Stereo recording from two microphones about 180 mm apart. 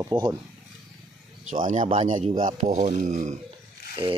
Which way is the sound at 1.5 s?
45° right (ahead or behind).